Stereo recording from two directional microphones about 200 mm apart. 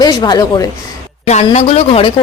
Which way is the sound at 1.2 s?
35° left (ahead or behind).